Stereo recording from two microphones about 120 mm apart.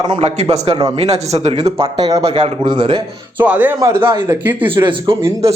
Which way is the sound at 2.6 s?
45° right (ahead or behind).